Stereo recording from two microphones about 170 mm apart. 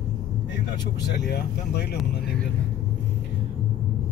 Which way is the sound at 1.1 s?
75° left (ahead or behind).